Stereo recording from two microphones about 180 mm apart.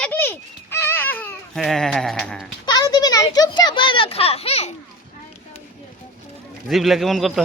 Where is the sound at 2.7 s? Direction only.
20° left (ahead or behind).